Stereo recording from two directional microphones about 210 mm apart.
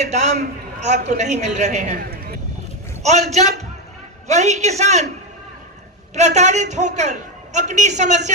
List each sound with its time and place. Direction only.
0.0 s a man's voice: 30° right (ahead or behind)
3.0 s a man's voice: 30° right (ahead or behind)
6.1 s a man's voice: 35° right (ahead or behind)